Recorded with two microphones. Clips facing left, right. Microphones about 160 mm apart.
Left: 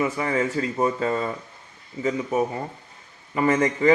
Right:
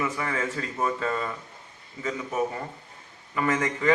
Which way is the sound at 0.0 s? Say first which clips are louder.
Left 5 dB; 30° left (ahead or behind).